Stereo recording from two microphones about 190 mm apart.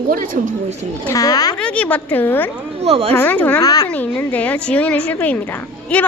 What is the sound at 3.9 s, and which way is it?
A woman's voice, 10° left (ahead or behind).